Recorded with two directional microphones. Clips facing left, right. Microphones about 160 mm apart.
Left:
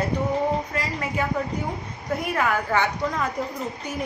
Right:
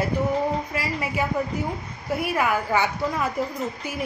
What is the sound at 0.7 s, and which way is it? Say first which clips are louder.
A woman's voice: even; 10° right (ahead or behind).